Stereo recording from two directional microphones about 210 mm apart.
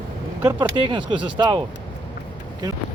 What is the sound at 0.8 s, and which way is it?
Speech, 25° right (ahead or behind).